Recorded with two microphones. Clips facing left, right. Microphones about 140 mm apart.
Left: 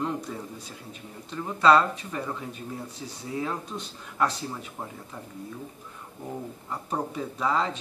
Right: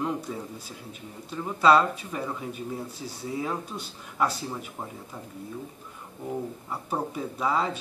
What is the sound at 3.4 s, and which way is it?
Speech, 5° right (ahead or behind).